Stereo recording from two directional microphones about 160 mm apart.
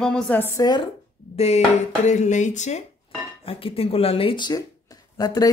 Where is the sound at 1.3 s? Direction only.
45° left (ahead or behind).